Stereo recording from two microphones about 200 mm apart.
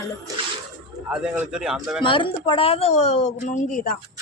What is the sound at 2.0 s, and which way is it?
Speech, 25° left (ahead or behind).